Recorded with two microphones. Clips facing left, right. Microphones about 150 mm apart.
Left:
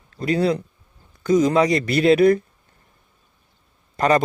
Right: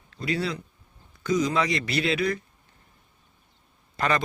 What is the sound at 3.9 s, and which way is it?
Speech, 40° left (ahead or behind).